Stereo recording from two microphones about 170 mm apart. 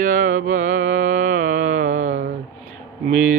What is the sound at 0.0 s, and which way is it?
Mantra, 50° right (ahead or behind).